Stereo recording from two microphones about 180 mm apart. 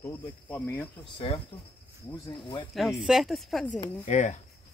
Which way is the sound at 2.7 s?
Centre (ahead or behind).